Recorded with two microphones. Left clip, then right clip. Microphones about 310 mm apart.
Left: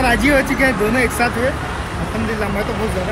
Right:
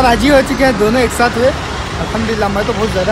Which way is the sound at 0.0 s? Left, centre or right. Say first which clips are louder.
Right 5 dB; centre.